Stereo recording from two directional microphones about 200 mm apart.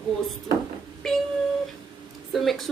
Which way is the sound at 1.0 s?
Centre (ahead or behind).